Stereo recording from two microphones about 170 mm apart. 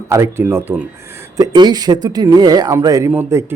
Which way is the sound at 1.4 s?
25° right (ahead or behind).